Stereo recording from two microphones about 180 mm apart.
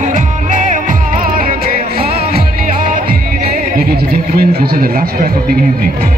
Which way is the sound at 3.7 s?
55° right (ahead or behind).